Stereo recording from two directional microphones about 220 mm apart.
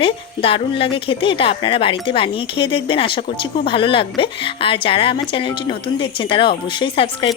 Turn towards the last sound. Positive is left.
turn(degrees=25)  # may be behind; listen again after turning